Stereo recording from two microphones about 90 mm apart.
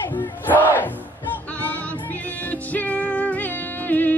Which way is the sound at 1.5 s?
20° left (ahead or behind).